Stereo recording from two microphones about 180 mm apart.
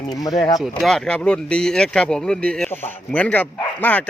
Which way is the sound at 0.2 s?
20° left (ahead or behind).